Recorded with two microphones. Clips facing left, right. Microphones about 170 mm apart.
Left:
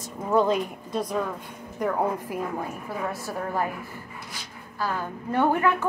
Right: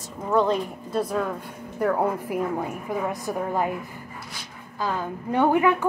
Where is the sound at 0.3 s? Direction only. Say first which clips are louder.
Even; 10° left (ahead or behind).